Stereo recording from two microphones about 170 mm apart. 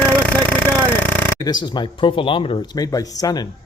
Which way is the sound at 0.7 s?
10° right (ahead or behind).